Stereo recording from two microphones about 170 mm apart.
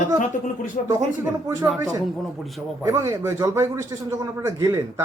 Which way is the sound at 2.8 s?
15° right (ahead or behind).